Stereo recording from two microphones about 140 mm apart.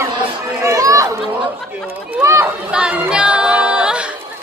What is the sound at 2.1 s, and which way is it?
Speech, 15° right (ahead or behind).